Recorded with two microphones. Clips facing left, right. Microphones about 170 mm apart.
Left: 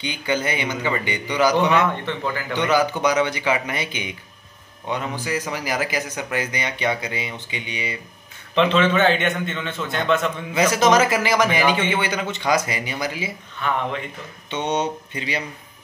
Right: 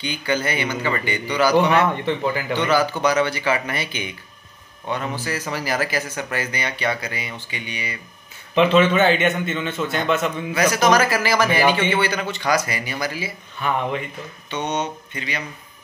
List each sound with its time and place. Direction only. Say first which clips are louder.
0.0 s speech: even; 20° left (ahead or behind)
8.5 s a man's voice: right 2 dB; 5° right (ahead or behind)
10.5 s a man's voice: left 1 dB; 25° left (ahead or behind)
14.5 s speech: left 2 dB; 30° left (ahead or behind)